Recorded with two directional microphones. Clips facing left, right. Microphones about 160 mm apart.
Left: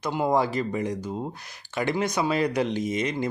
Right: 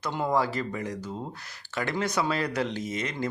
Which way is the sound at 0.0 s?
15° left (ahead or behind).